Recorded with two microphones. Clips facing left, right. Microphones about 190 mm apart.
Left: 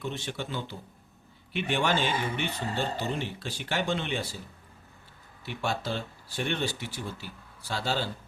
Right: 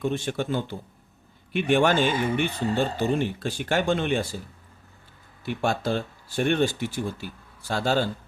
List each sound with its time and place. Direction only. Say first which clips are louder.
0.0 s speech: right 8 dB; 50° right (ahead or behind)
5.5 s speech: right 6 dB; 50° right (ahead or behind)